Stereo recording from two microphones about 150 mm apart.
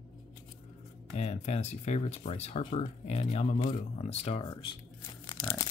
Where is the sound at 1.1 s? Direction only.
45° left (ahead or behind).